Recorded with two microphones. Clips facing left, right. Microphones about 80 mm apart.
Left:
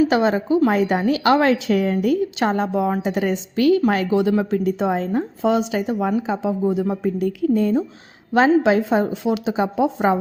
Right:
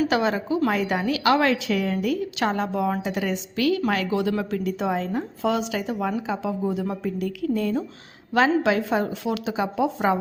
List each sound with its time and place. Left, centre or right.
0.1 s a woman's voice: left